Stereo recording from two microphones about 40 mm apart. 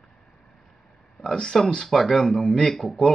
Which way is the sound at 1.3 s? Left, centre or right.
Centre.